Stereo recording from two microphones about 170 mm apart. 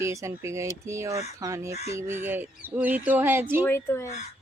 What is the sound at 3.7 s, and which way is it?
Speech, 15° left (ahead or behind).